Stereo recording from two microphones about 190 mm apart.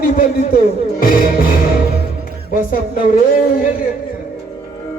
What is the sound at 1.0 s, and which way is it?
Music, 50° left (ahead or behind).